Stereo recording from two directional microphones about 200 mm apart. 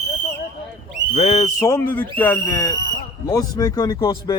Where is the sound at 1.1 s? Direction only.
25° left (ahead or behind).